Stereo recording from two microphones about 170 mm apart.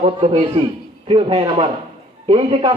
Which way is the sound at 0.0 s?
40° right (ahead or behind).